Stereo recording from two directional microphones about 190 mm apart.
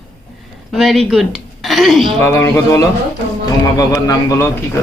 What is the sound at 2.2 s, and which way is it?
A man's voice, 15° left (ahead or behind).